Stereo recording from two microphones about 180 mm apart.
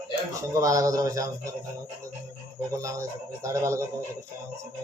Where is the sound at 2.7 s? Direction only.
15° right (ahead or behind).